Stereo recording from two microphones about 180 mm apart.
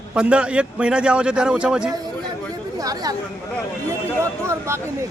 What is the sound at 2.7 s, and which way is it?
Speech, 20° right (ahead or behind).